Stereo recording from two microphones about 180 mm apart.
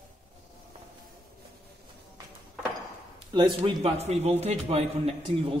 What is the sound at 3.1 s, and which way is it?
Speech, 25° right (ahead or behind).